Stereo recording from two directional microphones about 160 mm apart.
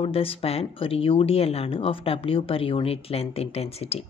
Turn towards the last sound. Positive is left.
turn(degrees=40)  # may be behind; listen again after turning